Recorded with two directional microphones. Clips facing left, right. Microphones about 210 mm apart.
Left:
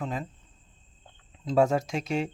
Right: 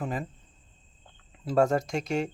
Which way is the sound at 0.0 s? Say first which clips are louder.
Right 1 dB; 5° right (ahead or behind).